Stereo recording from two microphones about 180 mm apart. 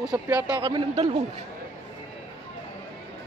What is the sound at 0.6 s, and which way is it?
Speech, 25° right (ahead or behind).